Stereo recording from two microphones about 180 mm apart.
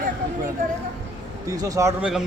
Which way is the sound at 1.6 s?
20° right (ahead or behind).